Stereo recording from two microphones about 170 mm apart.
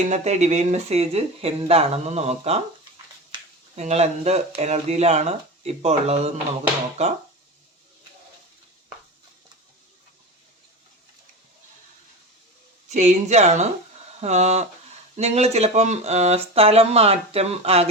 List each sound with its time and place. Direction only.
0.1 s speech: 40° right (ahead or behind)
3.8 s speech: 40° right (ahead or behind)
12.9 s speech: 40° right (ahead or behind)